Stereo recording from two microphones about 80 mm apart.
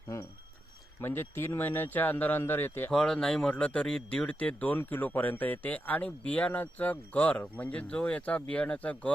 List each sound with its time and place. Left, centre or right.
1.0 s speech: left
2.9 s speech: centre